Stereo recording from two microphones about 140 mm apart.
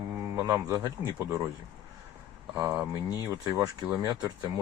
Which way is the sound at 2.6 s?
20° right (ahead or behind).